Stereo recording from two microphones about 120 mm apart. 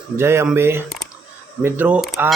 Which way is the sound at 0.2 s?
20° right (ahead or behind).